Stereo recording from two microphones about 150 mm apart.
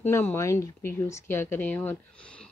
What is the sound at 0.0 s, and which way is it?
Speech, 15° left (ahead or behind).